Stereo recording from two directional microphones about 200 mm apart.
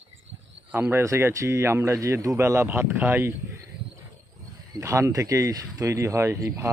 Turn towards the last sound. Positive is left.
turn(degrees=-15)  # may be behind; listen again after turning